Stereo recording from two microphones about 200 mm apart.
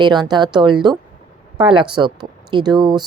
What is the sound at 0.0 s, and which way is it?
Speech, 20° right (ahead or behind).